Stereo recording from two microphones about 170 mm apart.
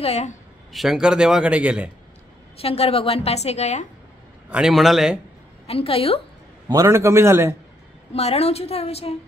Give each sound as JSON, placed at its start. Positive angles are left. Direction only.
{"t": 0.0, "sound": "a woman's voice", "side_deg": 40}
{"t": 0.7, "sound": "a man's voice", "side_deg": 0}
{"t": 2.5, "sound": "a woman's voice", "side_deg": 35}
{"t": 4.5, "sound": "a man's voice", "side_deg": -5}
{"t": 5.7, "sound": "a woman's voice", "side_deg": 35}
{"t": 6.7, "sound": "a man's voice", "side_deg": -20}
{"t": 8.1, "sound": "a woman's voice", "side_deg": 35}